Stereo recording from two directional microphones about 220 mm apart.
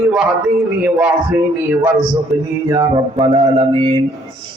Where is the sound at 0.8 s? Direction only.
5° right (ahead or behind).